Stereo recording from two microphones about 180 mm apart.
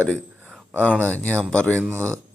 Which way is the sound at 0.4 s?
10° right (ahead or behind).